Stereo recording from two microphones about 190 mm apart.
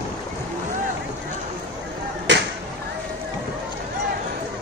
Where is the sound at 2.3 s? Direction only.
70° right (ahead or behind).